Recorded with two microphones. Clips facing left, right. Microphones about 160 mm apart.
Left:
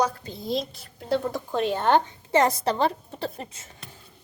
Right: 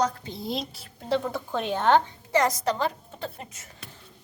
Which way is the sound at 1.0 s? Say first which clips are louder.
Left 1 dB; 5° left (ahead or behind).